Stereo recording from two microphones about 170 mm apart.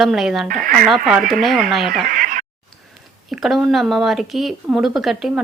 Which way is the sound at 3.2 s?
Centre (ahead or behind).